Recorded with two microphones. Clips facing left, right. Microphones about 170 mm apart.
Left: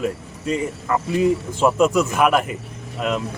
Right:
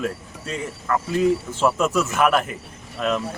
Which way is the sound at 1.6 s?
10° left (ahead or behind).